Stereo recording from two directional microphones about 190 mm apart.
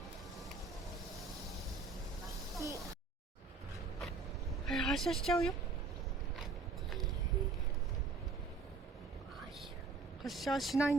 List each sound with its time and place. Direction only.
2.6 s a sound: 15° right (ahead or behind)
4.6 s a woman's voice: centre (ahead or behind)
10.2 s speech: centre (ahead or behind)